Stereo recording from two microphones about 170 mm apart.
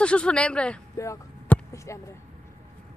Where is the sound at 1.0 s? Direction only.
15° left (ahead or behind).